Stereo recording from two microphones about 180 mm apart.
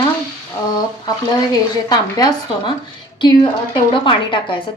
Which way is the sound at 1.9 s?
20° left (ahead or behind).